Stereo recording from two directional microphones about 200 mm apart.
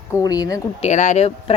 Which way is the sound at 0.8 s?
35° left (ahead or behind).